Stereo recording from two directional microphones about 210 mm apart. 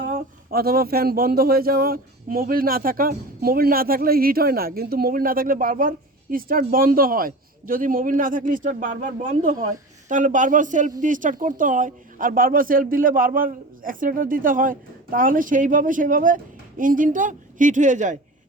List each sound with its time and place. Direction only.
0.1 s speech: 45° right (ahead or behind)